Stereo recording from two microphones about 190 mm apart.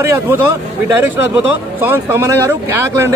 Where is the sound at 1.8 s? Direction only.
10° right (ahead or behind).